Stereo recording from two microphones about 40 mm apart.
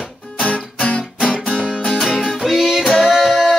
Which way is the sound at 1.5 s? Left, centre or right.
Centre.